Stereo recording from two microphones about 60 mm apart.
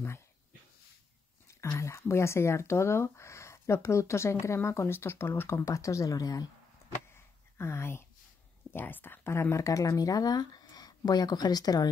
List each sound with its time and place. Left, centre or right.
1.8 s speech: left
5.7 s speech: left
7.2 s a sound: left
8.7 s speech: left